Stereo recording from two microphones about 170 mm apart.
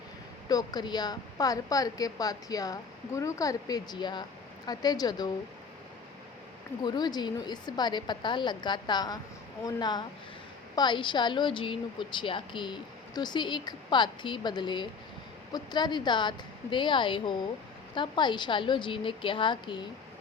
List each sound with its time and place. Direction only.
0.4 s a woman's voice: 20° left (ahead or behind)
6.8 s a woman's voice: 25° left (ahead or behind)